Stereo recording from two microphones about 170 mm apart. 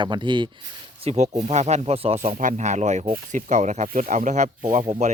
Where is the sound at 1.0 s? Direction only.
40° right (ahead or behind).